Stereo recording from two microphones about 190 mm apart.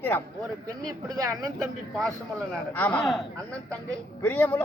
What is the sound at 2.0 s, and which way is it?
A man's voice, centre (ahead or behind).